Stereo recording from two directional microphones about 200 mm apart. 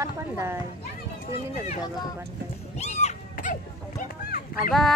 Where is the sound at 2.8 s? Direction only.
35° left (ahead or behind).